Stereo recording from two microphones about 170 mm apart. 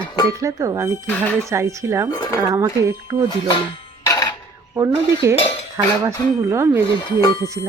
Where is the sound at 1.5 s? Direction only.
15° right (ahead or behind).